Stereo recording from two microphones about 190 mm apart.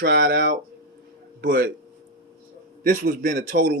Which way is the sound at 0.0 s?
60° right (ahead or behind).